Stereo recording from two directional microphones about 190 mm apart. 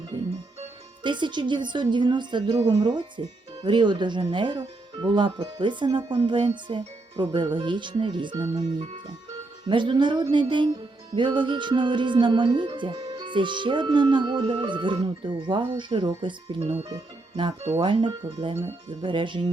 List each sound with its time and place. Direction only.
0.1 s speech: 25° right (ahead or behind)